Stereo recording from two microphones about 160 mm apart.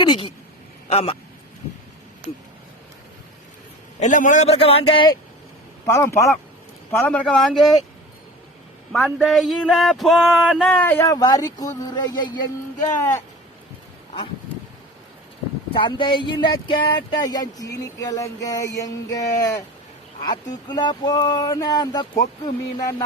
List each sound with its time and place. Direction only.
0.0 s speech: 30° left (ahead or behind)
4.0 s a man's voice: 50° left (ahead or behind)
4.6 s speech: 35° left (ahead or behind)
5.8 s speech: 20° left (ahead or behind)
6.9 s a sound: 5° left (ahead or behind)
8.9 s a sound: centre (ahead or behind); by 12.3 s 25° left (ahead or behind)
13.0 s speech: 15° left (ahead or behind)
15.7 s speech: 30° left (ahead or behind)